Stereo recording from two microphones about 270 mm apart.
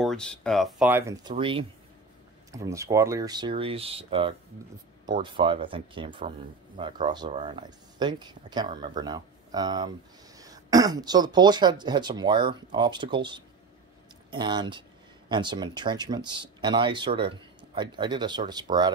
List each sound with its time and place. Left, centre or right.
0.0 s speech: centre